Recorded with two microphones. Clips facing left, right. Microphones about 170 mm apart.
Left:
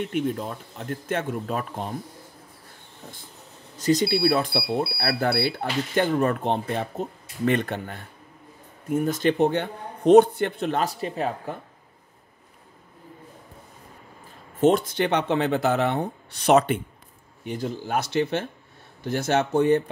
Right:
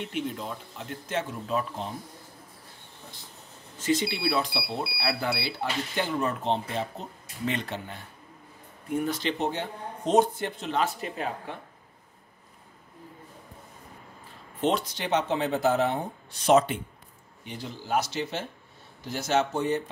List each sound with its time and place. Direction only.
0.1 s speech: 50° left (ahead or behind)
3.7 s speech: 40° left (ahead or behind); by 10.8 s 60° left (ahead or behind)
10.8 s speech: 40° left (ahead or behind)
14.6 s speech: 50° left (ahead or behind)
17.5 s speech: 50° left (ahead or behind)